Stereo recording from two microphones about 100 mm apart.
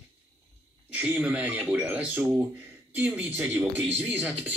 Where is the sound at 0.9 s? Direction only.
15° right (ahead or behind).